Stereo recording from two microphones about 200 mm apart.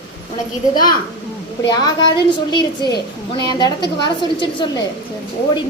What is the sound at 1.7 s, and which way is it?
A woman's voice, 20° left (ahead or behind).